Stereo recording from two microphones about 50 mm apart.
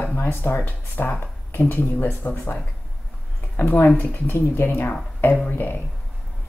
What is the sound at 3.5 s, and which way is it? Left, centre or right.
Speech, left.